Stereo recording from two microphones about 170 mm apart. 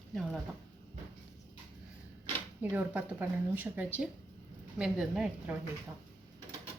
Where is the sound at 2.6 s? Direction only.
10° right (ahead or behind).